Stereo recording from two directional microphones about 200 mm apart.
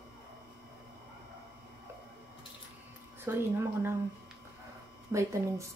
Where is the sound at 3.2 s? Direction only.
10° right (ahead or behind).